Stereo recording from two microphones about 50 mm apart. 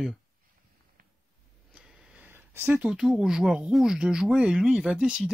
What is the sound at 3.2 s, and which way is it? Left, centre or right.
Speech, centre.